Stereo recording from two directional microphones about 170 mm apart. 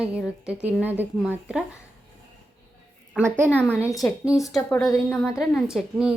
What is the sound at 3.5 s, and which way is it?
Speech, 10° left (ahead or behind).